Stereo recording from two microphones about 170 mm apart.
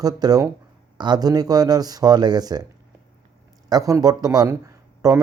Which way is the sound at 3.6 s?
20° right (ahead or behind).